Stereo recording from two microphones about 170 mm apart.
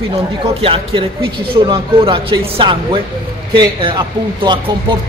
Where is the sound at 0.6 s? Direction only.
35° right (ahead or behind).